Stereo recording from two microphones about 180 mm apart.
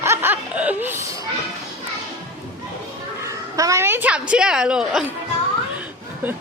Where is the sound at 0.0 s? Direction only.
15° right (ahead or behind).